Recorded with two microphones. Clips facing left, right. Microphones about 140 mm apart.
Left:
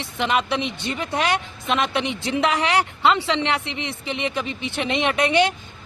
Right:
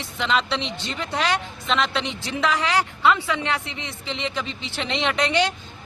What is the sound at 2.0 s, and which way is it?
A woman's voice, 60° left (ahead or behind).